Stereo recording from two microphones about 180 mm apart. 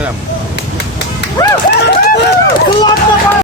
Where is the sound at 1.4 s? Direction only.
20° left (ahead or behind).